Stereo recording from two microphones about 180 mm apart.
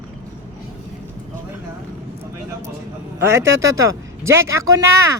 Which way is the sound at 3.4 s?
15° right (ahead or behind).